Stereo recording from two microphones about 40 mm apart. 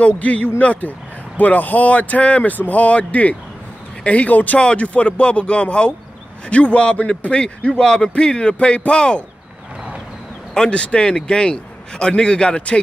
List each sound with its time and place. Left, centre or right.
0.0 s speech: left
4.6 s a man's voice: left
7.8 s a man's voice: centre
10.5 s a man's voice: left